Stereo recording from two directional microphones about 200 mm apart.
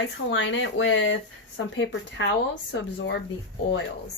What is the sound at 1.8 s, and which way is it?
Speech, 65° left (ahead or behind).